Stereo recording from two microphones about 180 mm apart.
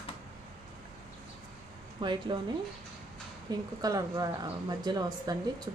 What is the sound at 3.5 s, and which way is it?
Speech, 20° right (ahead or behind).